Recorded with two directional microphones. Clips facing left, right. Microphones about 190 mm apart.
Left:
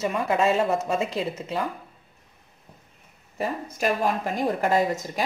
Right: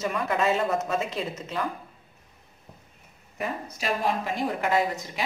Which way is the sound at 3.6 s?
50° left (ahead or behind).